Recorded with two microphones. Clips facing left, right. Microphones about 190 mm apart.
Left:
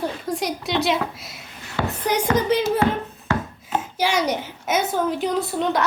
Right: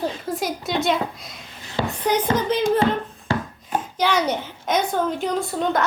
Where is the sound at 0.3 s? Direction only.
Centre (ahead or behind).